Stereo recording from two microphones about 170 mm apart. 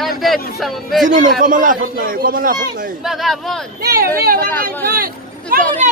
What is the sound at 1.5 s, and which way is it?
A man's voice, 50° right (ahead or behind).